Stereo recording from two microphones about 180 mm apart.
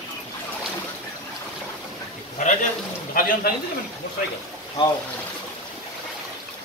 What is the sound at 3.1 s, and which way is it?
Speech, 55° left (ahead or behind).